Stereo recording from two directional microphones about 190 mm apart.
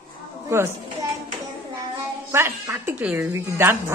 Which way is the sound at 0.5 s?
15° right (ahead or behind).